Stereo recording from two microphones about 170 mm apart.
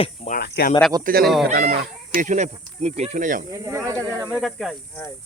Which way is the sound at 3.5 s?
15° right (ahead or behind).